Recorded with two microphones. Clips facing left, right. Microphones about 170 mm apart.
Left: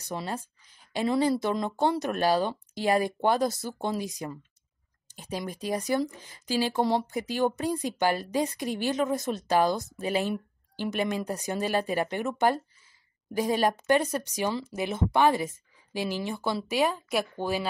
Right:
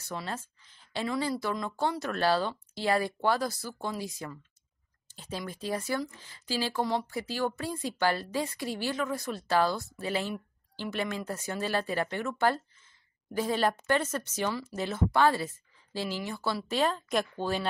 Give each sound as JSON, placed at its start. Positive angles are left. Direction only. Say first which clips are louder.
{"t": 0.0, "sound": "speech", "louder": "left 3 dB", "side_deg": 15}
{"t": 1.0, "sound": "speech", "louder": "left 6 dB", "side_deg": 25}